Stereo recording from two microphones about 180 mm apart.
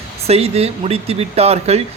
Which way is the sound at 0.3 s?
35° right (ahead or behind).